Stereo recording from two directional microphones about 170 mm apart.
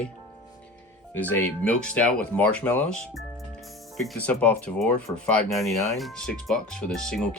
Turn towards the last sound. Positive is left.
turn(degrees=5)  # may be behind; listen again after turning